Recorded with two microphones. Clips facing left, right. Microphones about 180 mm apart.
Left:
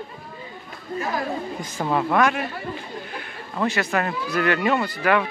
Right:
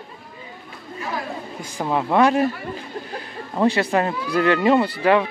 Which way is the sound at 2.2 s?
35° right (ahead or behind).